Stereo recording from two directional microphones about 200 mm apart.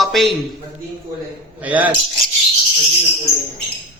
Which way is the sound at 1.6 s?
5° right (ahead or behind).